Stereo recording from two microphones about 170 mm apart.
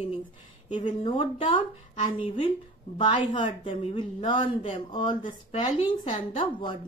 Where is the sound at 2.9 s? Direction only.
30° left (ahead or behind).